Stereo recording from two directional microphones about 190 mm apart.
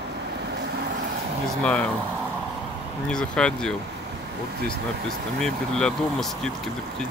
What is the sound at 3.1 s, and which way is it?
Speech, 5° left (ahead or behind).